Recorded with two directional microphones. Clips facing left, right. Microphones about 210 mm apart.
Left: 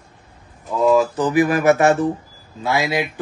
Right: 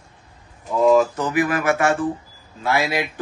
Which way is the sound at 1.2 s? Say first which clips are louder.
Left 5 dB; 40° left (ahead or behind).